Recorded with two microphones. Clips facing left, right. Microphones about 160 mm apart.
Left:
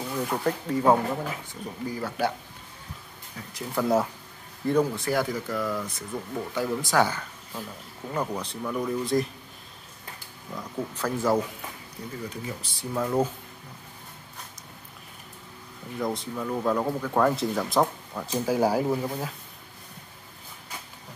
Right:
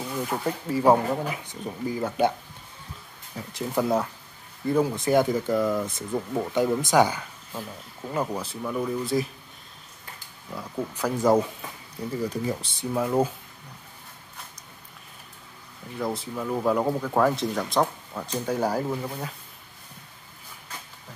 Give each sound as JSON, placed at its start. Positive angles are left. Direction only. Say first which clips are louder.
{"t": 0.1, "sound": "speech", "louder": "left 2 dB", "side_deg": -5}
{"t": 3.3, "sound": "speech", "louder": "right 3 dB", "side_deg": -25}
{"t": 4.6, "sound": "speech", "louder": "even", "side_deg": -5}
{"t": 4.9, "sound": "speech", "louder": "right 5 dB", "side_deg": -20}
{"t": 10.5, "sound": "speech", "louder": "right 1 dB", "side_deg": -10}
{"t": 12.4, "sound": "speech", "louder": "right 7 dB", "side_deg": -25}
{"t": 12.9, "sound": "speech", "louder": "right 2 dB", "side_deg": -15}
{"t": 16.0, "sound": "speech", "louder": "even", "side_deg": -5}